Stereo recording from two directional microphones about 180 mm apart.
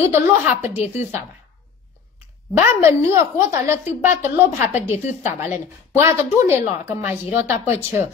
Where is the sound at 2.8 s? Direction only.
15° right (ahead or behind).